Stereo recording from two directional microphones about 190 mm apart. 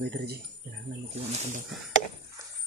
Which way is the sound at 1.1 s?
35° right (ahead or behind).